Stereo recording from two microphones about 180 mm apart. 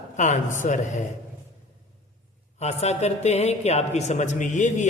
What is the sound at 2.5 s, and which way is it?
A woman's voice, 40° left (ahead or behind).